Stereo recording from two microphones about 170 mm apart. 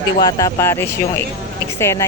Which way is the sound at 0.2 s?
20° left (ahead or behind).